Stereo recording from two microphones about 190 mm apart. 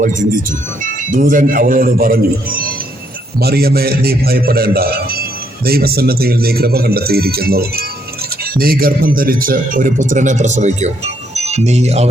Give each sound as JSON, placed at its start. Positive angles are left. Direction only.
{"t": 0.0, "sound": "a man's voice", "side_deg": -45}